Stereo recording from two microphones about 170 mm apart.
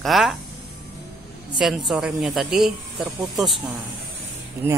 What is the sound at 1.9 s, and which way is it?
Speech, 5° right (ahead or behind).